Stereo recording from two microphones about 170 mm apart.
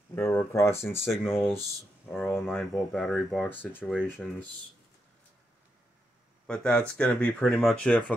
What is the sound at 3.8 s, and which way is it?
Speech, 5° right (ahead or behind).